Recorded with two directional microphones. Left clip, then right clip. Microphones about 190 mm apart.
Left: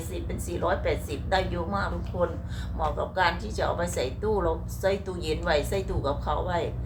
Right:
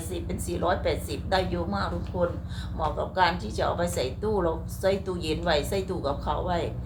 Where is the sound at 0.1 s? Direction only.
5° right (ahead or behind).